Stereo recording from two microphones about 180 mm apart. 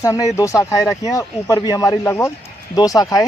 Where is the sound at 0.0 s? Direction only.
15° left (ahead or behind).